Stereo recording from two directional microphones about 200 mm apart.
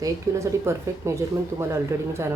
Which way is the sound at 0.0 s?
15° right (ahead or behind).